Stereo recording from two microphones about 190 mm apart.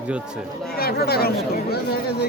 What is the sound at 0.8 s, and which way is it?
Chatter, 55° left (ahead or behind).